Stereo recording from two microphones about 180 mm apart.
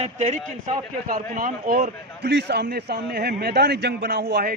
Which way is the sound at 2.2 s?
70° right (ahead or behind).